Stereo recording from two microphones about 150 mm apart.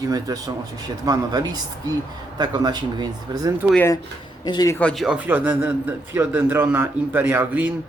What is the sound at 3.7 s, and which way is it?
Speech, 20° left (ahead or behind).